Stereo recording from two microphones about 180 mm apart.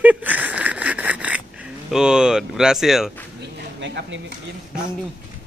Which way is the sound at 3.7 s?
80° right.